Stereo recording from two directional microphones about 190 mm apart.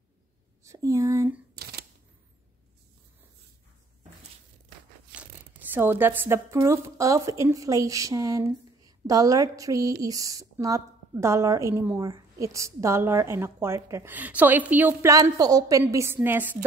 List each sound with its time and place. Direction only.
0.7 s a sound: 15° right (ahead or behind)
1.5 s camera: 55° right (ahead or behind)
5.7 s a woman's voice: 10° right (ahead or behind)